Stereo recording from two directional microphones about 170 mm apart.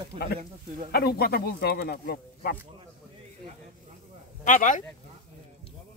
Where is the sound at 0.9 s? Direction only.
65° left (ahead or behind).